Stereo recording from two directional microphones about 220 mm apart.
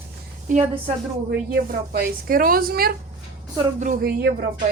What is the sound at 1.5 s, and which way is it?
Speech, 45° right (ahead or behind).